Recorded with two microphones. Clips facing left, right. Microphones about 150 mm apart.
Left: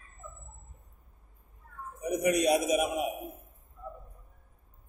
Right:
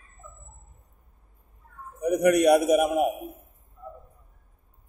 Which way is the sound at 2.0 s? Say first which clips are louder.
Right 7 dB; 65° right (ahead or behind).